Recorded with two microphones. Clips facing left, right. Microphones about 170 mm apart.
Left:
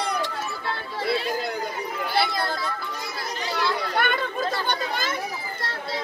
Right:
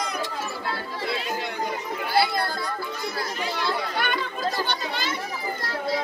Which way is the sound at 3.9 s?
50° left (ahead or behind).